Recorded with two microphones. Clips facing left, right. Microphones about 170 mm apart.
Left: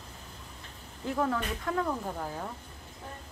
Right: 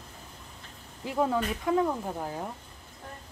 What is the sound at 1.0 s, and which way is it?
Speech, 20° right (ahead or behind).